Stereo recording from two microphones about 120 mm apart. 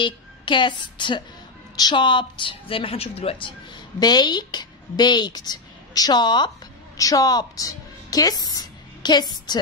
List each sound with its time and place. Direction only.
0.0 s a woman's voice: 40° left (ahead or behind)
4.0 s a woman's voice: 35° left (ahead or behind)